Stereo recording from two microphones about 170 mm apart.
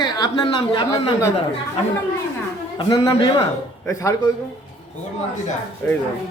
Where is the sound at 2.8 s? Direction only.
25° left (ahead or behind).